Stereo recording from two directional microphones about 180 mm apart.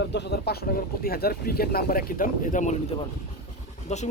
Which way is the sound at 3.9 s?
40° left (ahead or behind).